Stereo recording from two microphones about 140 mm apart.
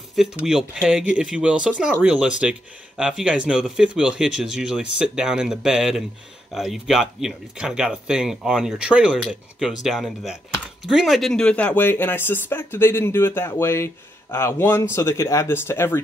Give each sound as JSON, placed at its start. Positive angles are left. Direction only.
{"t": 0.1, "sound": "speech", "side_deg": -5}